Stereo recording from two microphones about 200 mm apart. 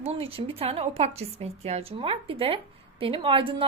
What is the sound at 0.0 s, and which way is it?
A woman's voice, 30° right (ahead or behind).